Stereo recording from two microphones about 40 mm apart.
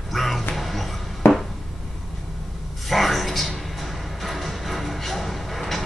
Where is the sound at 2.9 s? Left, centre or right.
Centre.